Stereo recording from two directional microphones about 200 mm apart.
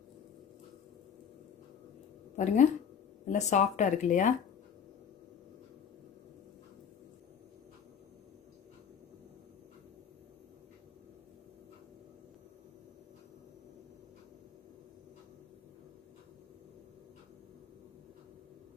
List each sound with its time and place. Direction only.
2.3 s speech: 35° left (ahead or behind)